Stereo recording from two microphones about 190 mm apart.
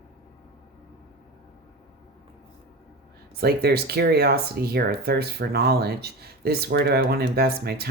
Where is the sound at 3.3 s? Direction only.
55° right (ahead or behind).